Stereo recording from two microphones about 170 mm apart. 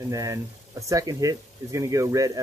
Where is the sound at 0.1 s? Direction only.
20° right (ahead or behind).